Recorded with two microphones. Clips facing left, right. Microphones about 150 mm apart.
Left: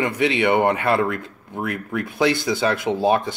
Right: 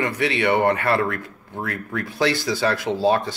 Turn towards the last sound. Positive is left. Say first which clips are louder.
# left 1 dB
turn(degrees=15)  # may be behind; listen again after turning